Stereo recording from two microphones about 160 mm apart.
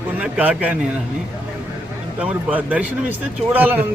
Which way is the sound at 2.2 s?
10° right (ahead or behind).